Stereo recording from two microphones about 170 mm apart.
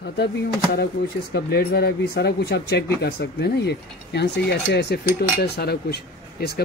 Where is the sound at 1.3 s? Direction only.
70° left (ahead or behind).